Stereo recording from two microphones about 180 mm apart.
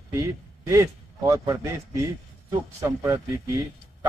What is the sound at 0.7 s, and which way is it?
A man's voice, 15° right (ahead or behind).